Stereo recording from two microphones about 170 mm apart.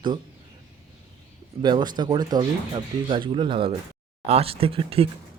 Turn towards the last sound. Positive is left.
turn(degrees=-35)  # may be behind; listen again after turning